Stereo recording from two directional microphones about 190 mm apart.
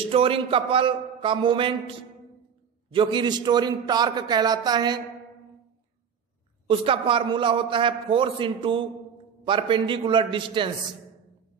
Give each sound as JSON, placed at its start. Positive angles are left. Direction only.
{"t": 0.0, "sound": "a man's voice", "side_deg": -30}
{"t": 2.9, "sound": "a man's voice", "side_deg": -25}
{"t": 6.7, "sound": "a man's voice", "side_deg": -25}